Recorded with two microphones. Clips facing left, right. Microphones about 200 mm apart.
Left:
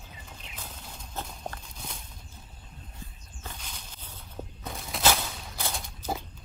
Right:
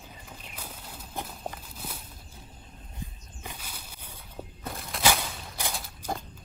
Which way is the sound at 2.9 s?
10° right (ahead or behind).